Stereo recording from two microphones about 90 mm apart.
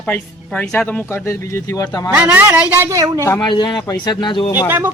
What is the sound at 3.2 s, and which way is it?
Speech, 30° left (ahead or behind).